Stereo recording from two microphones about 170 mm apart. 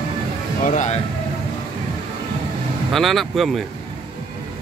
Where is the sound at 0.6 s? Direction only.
45° left (ahead or behind).